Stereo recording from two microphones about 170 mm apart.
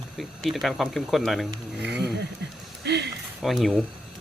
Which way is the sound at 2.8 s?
85° right.